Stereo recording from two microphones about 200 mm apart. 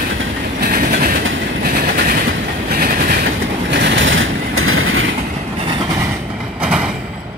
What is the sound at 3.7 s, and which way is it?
Vehicle, 60° right (ahead or behind).